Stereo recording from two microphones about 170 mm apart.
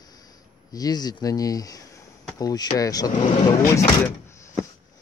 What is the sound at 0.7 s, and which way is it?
Speech, 25° left (ahead or behind).